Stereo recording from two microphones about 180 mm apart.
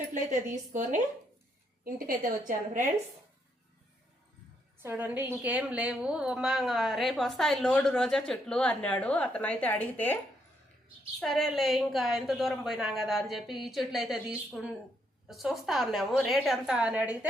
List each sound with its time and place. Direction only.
0.1 s a woman's voice: 45° right (ahead or behind)
4.8 s a woman's voice: 10° right (ahead or behind); by 10.2 s 10° left (ahead or behind)
11.2 s a woman's voice: centre (ahead or behind)